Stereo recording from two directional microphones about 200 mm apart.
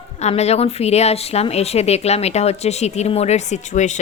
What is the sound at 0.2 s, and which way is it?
Speech, 35° left (ahead or behind).